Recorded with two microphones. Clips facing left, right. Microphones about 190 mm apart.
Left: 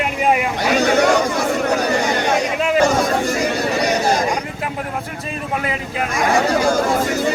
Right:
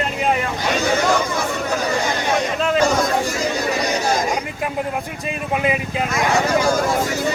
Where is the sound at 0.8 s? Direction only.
70° left (ahead or behind).